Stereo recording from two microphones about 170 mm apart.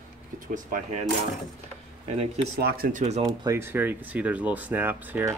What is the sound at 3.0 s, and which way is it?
Speech, 40° right (ahead or behind).